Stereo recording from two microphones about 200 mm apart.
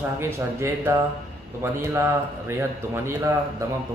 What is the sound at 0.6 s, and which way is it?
A man's voice, 15° right (ahead or behind).